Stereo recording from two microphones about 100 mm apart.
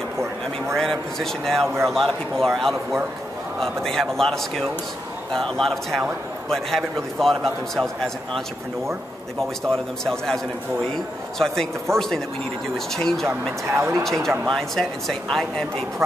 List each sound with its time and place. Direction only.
0.7 s a man's voice: 5° left (ahead or behind)
10.0 s a man's voice: 5° left (ahead or behind)
11.9 s speech: 25° right (ahead or behind)
12.7 s a man's voice: 5° left (ahead or behind)
13.3 s speech: 25° right (ahead or behind)
14.0 s a man's voice: centre (ahead or behind)